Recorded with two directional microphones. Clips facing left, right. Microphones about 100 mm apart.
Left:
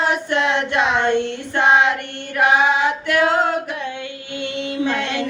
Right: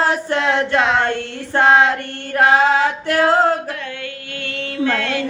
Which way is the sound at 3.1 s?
30° right (ahead or behind).